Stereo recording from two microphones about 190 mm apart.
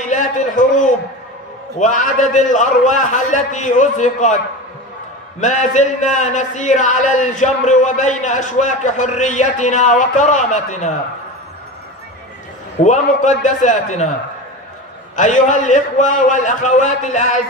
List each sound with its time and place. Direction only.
0.1 s a sound: 40° left (ahead or behind)
1.8 s speech: 40° left (ahead or behind)
5.4 s speech: 40° left (ahead or behind)
12.8 s speech: 40° left (ahead or behind)
15.1 s speech: 40° left (ahead or behind)